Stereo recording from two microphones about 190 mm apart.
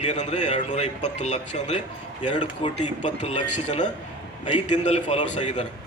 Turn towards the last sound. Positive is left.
turn(degrees=40)  # may be behind; listen again after turning